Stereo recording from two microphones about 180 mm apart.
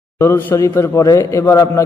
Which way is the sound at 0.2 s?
15° left (ahead or behind).